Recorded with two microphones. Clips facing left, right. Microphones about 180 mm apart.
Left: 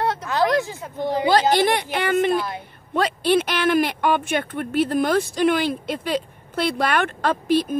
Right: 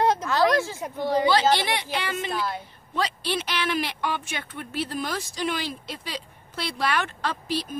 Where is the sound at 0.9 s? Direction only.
15° left (ahead or behind).